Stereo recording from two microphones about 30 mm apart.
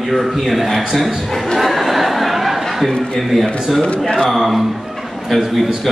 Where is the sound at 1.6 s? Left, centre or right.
Centre.